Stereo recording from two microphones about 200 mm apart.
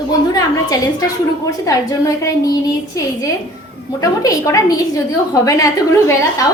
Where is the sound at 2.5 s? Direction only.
15° left (ahead or behind).